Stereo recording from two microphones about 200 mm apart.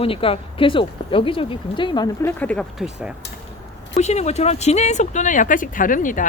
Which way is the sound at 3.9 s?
35° left (ahead or behind).